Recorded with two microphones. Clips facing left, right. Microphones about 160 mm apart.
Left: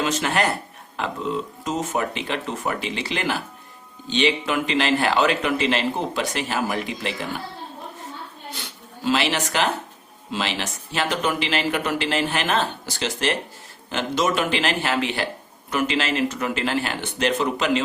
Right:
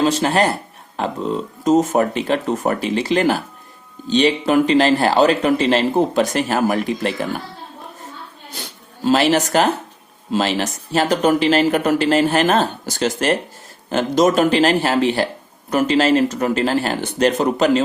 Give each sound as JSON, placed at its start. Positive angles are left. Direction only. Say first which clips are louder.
{"t": 0.0, "sound": "speech", "louder": "right 6 dB", "side_deg": -30}
{"t": 9.0, "sound": "speech", "louder": "right 7 dB", "side_deg": -40}